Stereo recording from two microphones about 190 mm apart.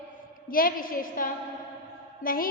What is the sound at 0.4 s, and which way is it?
A woman's voice, 50° left (ahead or behind).